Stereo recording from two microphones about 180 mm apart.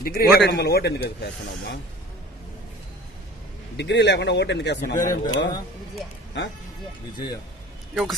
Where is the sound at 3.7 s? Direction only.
70° left (ahead or behind).